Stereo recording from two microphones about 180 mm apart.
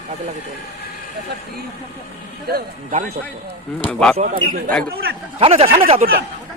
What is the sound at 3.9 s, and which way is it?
Speech, 5° left (ahead or behind).